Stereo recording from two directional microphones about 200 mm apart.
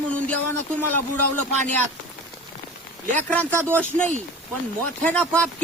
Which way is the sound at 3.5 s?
10° right (ahead or behind).